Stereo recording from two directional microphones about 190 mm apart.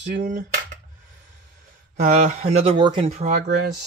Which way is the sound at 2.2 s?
35° right (ahead or behind).